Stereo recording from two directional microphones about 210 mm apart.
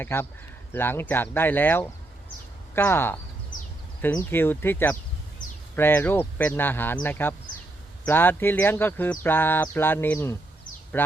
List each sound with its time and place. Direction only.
0.0 s speech: 10° left (ahead or behind)